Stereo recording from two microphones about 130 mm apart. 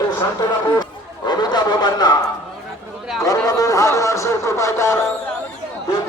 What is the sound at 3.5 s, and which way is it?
Speech, 25° left (ahead or behind).